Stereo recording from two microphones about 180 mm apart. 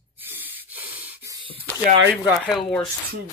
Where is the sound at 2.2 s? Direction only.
Centre (ahead or behind).